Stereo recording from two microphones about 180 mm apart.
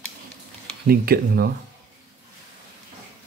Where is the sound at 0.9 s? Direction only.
55° right (ahead or behind).